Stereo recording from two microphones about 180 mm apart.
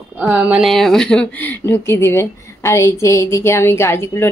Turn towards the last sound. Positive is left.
turn(degrees=15)  # may be behind; listen again after turning